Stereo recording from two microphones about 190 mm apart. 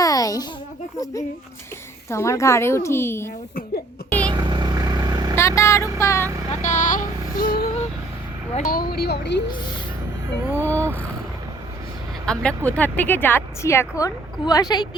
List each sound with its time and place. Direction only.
0.0 s a sound: 20° left (ahead or behind)
2.0 s speech: 15° left (ahead or behind)
4.3 s vehicle: 25° right (ahead or behind)
5.4 s speech: 15° left (ahead or behind)
6.5 s a sound: 40° left (ahead or behind)
8.5 s speech: 50° left (ahead or behind)
10.5 s speech: 15° right (ahead or behind)
12.2 s speech: 5° left (ahead or behind); by 14.8 s 20° left (ahead or behind)